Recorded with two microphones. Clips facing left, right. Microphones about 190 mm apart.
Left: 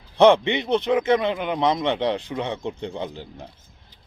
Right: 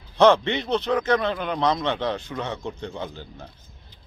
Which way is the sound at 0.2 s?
20° left (ahead or behind).